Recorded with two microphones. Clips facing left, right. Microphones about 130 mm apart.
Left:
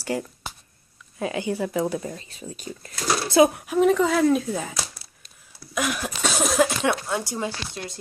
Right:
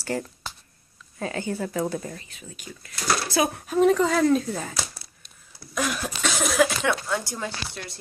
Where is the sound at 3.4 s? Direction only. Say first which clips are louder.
Left 5 dB; 15° left (ahead or behind).